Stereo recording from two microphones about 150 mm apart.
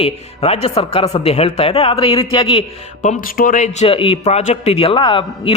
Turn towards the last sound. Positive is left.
turn(degrees=35)  # may be behind; listen again after turning